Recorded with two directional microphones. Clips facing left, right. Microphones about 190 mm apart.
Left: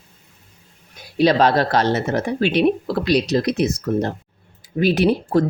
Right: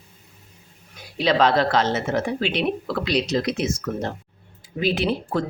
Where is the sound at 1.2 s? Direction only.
40° left (ahead or behind).